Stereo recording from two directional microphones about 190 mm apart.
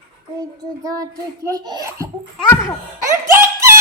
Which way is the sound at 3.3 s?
15° right (ahead or behind).